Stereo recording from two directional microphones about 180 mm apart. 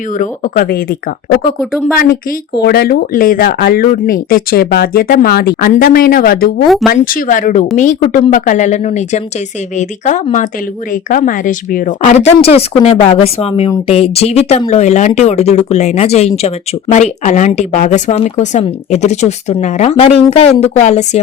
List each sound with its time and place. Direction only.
0.2 s speech: 50° left (ahead or behind)
2.6 s speech: 60° left (ahead or behind); by 21.2 s 40° left (ahead or behind)